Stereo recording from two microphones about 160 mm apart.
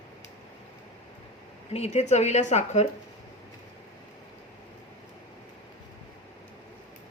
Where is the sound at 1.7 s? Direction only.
40° left (ahead or behind).